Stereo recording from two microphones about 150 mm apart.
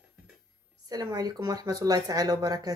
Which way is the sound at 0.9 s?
25° right (ahead or behind).